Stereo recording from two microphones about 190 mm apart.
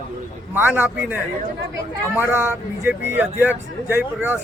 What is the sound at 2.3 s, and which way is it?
Speech, 10° right (ahead or behind).